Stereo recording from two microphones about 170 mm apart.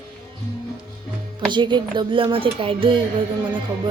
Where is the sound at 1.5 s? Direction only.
25° right (ahead or behind).